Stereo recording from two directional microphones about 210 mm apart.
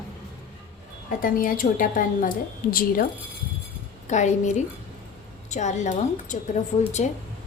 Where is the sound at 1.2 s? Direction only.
40° left (ahead or behind).